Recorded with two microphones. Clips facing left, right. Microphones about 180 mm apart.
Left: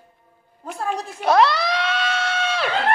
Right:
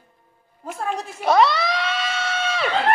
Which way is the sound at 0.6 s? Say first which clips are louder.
Left 1 dB; centre (ahead or behind).